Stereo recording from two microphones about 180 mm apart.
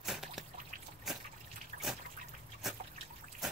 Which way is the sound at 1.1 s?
Centre (ahead or behind).